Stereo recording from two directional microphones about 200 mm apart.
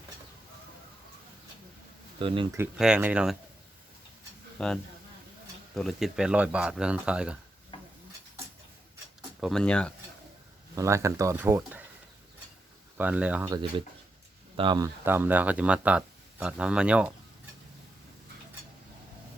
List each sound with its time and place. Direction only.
2.2 s speech: 25° right (ahead or behind)
2.7 s speech: 5° right (ahead or behind)
4.5 s speech: 5° left (ahead or behind)
9.4 s speech: centre (ahead or behind)
10.8 s speech: 15° right (ahead or behind)
13.0 s speech: 5° right (ahead or behind)
13.5 s speech: 25° right (ahead or behind)
15.0 s speech: 10° right (ahead or behind)